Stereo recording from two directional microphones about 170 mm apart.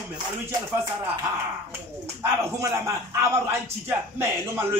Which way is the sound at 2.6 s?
15° right (ahead or behind).